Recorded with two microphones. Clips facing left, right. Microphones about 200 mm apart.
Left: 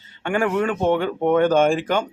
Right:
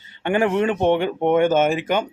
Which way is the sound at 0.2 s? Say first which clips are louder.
Right 2 dB; 20° right (ahead or behind).